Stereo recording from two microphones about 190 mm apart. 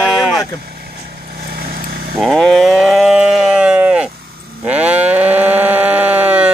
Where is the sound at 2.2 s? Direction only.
Centre (ahead or behind).